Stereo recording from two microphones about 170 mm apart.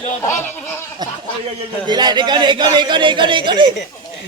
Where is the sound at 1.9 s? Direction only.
25° right (ahead or behind).